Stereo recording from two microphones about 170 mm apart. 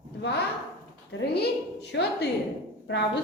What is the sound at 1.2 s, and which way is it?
A woman's voice, 75° left (ahead or behind).